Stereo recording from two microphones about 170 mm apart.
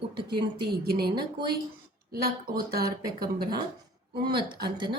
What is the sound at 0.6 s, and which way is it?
Speech, 65° right (ahead or behind).